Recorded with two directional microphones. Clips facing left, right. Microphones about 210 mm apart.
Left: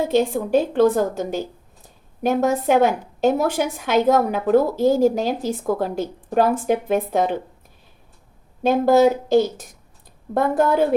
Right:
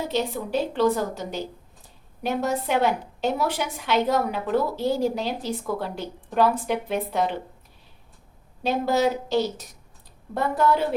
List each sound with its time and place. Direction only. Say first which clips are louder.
0.1 s a woman's voice: left 9 dB; 50° left (ahead or behind)
8.6 s a woman's voice: left 7 dB; 50° left (ahead or behind)